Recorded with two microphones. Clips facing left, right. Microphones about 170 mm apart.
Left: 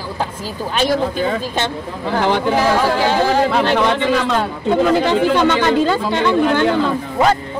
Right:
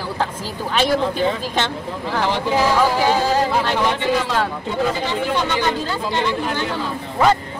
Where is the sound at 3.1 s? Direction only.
65° left (ahead or behind).